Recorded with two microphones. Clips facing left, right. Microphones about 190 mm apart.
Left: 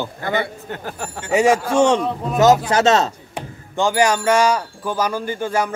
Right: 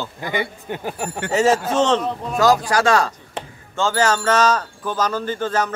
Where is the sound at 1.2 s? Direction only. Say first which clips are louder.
Left 2 dB; 15° left (ahead or behind).